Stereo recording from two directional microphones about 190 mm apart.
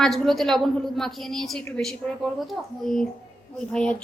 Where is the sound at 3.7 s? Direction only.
5° left (ahead or behind).